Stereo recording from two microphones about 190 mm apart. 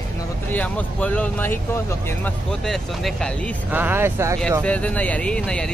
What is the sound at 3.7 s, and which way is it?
Speech, 10° right (ahead or behind).